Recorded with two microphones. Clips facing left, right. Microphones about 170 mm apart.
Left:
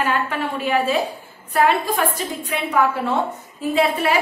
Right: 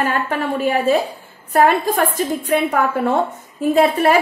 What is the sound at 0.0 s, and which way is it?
A woman's voice, 45° right (ahead or behind).